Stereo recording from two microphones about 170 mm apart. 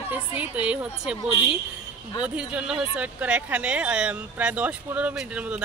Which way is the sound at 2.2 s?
5° right (ahead or behind).